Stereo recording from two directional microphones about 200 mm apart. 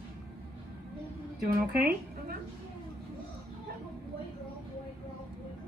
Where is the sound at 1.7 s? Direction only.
50° right (ahead or behind).